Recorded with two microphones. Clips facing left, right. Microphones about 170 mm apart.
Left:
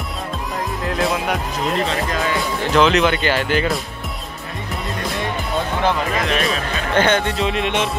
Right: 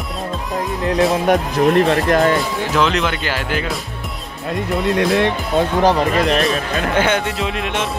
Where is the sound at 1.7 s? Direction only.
65° right (ahead or behind).